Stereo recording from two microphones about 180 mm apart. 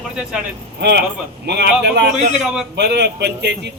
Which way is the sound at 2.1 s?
40° right (ahead or behind).